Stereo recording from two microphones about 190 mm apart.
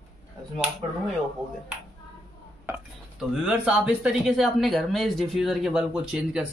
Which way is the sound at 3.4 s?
5° right (ahead or behind).